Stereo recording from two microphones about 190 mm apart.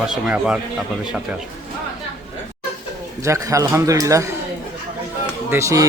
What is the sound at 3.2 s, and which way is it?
A man's voice, 15° right (ahead or behind).